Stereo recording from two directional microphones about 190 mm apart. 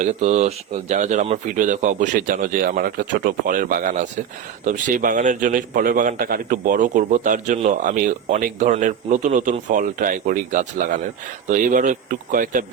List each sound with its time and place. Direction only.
0.0 s a man's voice: 40° right (ahead or behind)